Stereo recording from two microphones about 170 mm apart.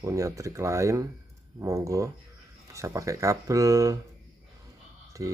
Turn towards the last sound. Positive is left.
turn(degrees=-20)  # may be behind; listen again after turning